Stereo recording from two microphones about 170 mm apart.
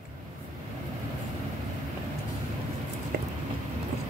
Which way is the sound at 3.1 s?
60° right (ahead or behind).